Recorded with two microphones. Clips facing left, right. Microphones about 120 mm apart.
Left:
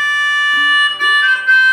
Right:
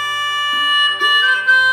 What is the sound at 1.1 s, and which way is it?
Harmonica, 5° right (ahead or behind).